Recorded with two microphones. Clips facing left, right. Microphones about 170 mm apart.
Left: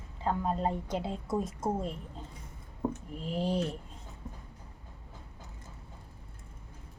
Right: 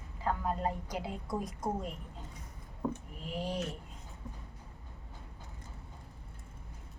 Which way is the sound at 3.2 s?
30° left (ahead or behind).